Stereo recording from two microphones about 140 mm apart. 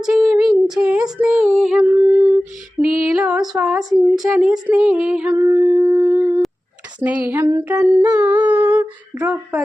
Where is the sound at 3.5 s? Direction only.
5° right (ahead or behind).